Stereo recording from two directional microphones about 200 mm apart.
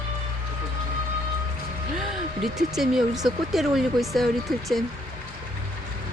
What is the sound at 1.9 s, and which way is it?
Speech, centre (ahead or behind).